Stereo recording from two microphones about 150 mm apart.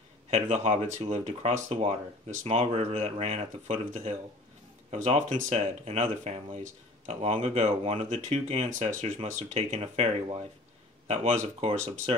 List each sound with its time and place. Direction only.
0.3 s speech: 45° right (ahead or behind)